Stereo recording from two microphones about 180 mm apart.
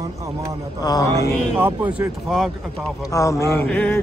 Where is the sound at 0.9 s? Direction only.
20° left (ahead or behind).